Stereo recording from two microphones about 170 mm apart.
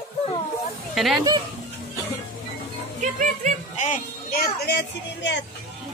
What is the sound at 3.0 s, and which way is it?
Speech, 50° right (ahead or behind).